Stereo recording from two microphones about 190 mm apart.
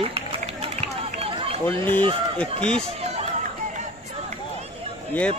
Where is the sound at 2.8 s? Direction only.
35° right (ahead or behind).